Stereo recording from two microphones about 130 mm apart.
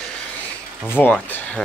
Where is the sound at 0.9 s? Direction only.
15° left (ahead or behind).